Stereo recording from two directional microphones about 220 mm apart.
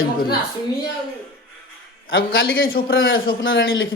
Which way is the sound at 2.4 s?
60° left (ahead or behind).